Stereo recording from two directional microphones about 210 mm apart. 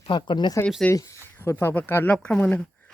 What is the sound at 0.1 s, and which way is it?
Speech, 20° left (ahead or behind).